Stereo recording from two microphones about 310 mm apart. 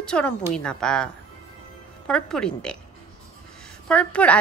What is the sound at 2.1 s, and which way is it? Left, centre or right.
Speech, centre.